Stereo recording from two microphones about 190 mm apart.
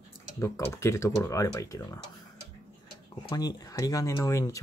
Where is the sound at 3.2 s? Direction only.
20° left (ahead or behind).